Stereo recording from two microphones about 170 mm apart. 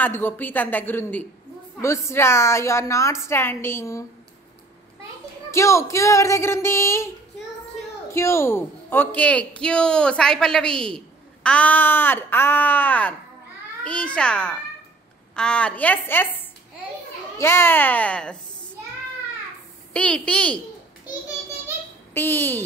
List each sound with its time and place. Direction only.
0.0 s a woman's voice: 10° left (ahead or behind)
5.5 s a woman's voice: 15° left (ahead or behind)
8.1 s a woman's voice: 15° left (ahead or behind)
17.4 s a woman's voice: 15° left (ahead or behind)
19.9 s a woman's voice: 5° left (ahead or behind)
22.1 s a woman's voice: 10° left (ahead or behind)